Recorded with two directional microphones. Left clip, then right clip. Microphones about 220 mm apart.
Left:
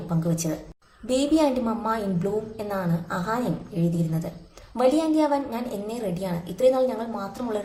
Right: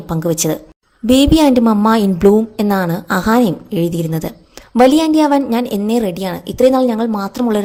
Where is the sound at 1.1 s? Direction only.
40° right (ahead or behind).